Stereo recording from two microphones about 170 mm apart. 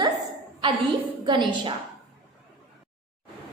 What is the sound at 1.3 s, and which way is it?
Speech, 25° right (ahead or behind).